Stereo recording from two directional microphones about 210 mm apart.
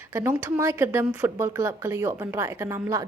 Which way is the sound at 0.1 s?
10° right (ahead or behind).